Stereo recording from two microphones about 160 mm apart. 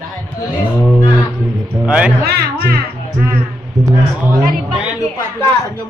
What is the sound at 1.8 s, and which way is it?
Speech, 5° right (ahead or behind).